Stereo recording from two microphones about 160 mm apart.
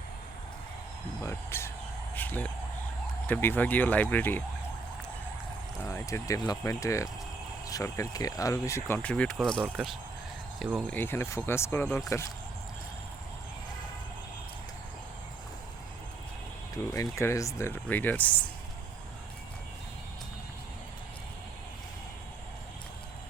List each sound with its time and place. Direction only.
1.2 s speech: 15° left (ahead or behind)
5.8 s speech: 15° left (ahead or behind)
9.0 s speech: 10° left (ahead or behind)
10.8 s speech: 15° left (ahead or behind)
16.7 s speech: 20° left (ahead or behind)